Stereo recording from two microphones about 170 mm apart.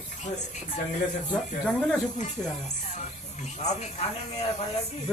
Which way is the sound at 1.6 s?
10° left (ahead or behind).